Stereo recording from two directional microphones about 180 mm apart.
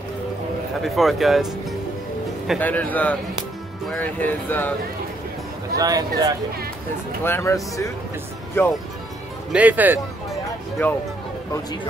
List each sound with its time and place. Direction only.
0.7 s speech: centre (ahead or behind)
2.6 s speech: 10° left (ahead or behind)
5.8 s speech: 20° right (ahead or behind)
7.2 s speech: 15° left (ahead or behind)
9.5 s speech: 10° right (ahead or behind)
10.8 s speech: 10° left (ahead or behind)